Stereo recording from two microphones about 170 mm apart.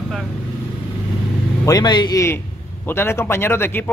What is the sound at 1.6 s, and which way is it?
Speech, 25° left (ahead or behind).